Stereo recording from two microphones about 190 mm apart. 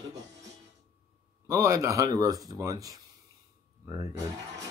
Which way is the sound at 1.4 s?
15° right (ahead or behind).